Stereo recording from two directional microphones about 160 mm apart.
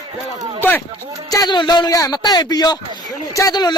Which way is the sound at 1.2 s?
25° left (ahead or behind).